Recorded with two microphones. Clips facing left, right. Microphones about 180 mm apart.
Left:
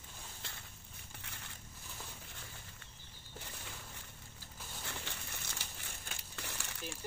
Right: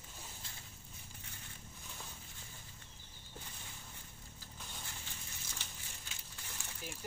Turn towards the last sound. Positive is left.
turn(degrees=75)  # may be behind; listen again after turning